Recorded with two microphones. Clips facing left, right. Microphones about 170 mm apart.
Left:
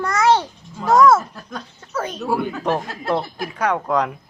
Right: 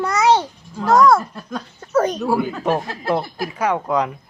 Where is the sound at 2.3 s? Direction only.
5° right (ahead or behind).